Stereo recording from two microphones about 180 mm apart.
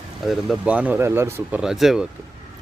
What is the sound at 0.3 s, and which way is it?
Speech, 5° right (ahead or behind).